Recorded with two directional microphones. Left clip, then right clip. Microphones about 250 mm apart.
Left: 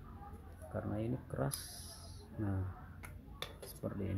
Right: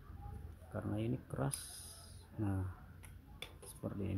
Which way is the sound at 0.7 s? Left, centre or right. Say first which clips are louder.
Left 1 dB; centre.